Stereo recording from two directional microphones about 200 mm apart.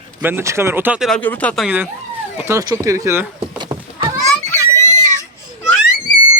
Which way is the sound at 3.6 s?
20° right (ahead or behind).